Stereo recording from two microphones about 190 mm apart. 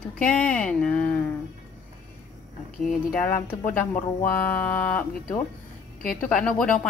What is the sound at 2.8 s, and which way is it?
Speech, 5° left (ahead or behind).